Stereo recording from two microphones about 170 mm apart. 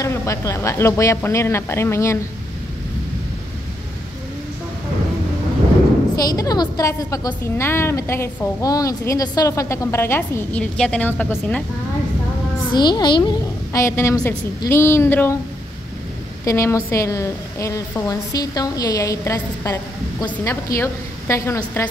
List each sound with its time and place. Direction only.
0.0 s a woman's voice: 15° left (ahead or behind)
6.2 s a woman's voice: 20° left (ahead or behind)
12.7 s a woman's voice: 25° left (ahead or behind)
16.4 s a woman's voice: 20° left (ahead or behind)